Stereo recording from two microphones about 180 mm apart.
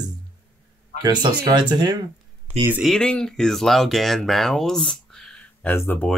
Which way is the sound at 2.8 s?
5° left (ahead or behind).